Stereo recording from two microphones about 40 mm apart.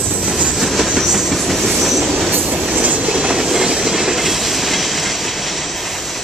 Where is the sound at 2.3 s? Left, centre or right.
Right.